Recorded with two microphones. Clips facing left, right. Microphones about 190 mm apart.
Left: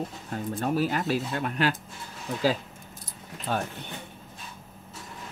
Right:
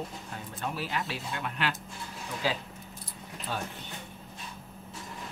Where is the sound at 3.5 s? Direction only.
55° left (ahead or behind).